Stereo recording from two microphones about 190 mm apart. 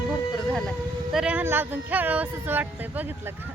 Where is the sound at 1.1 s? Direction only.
5° right (ahead or behind).